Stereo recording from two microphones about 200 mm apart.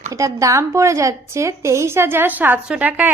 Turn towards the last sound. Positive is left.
turn(degrees=-10)  # may be behind; listen again after turning